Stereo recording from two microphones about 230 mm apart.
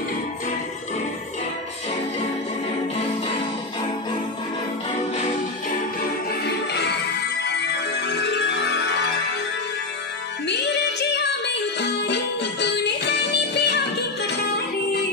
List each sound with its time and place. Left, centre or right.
6.4 s music: left
10.4 s music: left